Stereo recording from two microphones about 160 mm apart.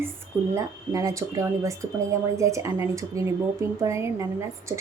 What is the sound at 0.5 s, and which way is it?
A woman's voice, 20° right (ahead or behind).